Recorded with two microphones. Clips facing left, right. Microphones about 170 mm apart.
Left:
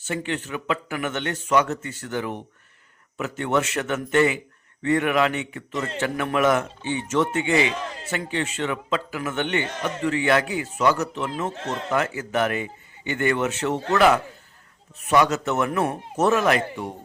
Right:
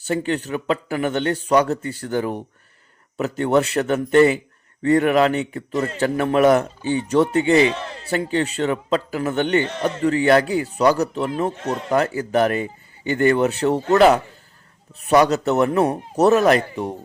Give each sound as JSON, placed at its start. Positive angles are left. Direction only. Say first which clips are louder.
{"t": 0.0, "sound": "a man's voice", "louder": "right 6 dB", "side_deg": -35}